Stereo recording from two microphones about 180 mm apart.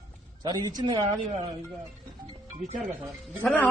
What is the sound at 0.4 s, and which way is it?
Speech, 25° right (ahead or behind).